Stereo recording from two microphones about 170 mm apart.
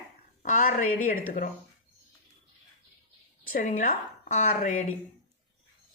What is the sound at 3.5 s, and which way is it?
A woman's voice, 50° left (ahead or behind).